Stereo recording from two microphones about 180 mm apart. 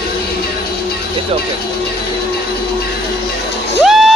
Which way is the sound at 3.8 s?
Centre (ahead or behind).